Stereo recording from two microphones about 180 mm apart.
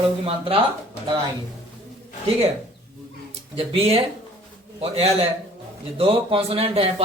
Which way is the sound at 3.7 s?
30° right (ahead or behind).